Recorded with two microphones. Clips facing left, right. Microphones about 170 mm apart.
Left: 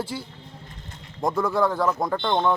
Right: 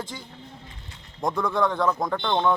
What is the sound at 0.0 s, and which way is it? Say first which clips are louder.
Speech: left 5 dB; 10° left (ahead or behind).